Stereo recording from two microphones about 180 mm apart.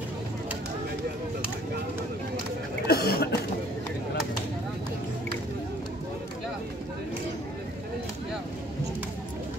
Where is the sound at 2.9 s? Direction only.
60° left (ahead or behind).